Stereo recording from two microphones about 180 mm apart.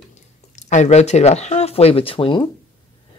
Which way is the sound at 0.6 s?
40° left (ahead or behind).